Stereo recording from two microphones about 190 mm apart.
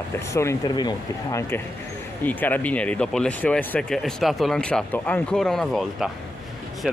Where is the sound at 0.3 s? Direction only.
15° left (ahead or behind).